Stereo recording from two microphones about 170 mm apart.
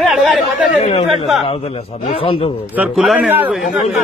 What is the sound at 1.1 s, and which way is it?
Speech, centre (ahead or behind).